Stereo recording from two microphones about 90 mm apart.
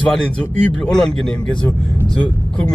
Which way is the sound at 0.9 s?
10° left (ahead or behind).